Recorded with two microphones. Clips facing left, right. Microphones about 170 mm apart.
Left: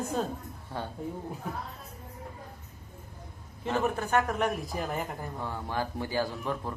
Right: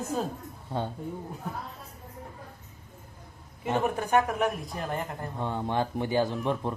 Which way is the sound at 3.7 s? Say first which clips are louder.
Right 2 dB; 15° right (ahead or behind).